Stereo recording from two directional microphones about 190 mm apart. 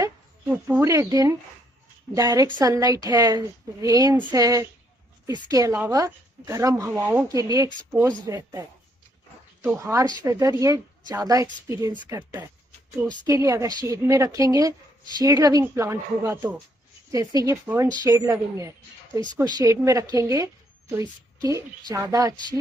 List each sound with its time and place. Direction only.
0.0 s a woman's voice: 10° right (ahead or behind)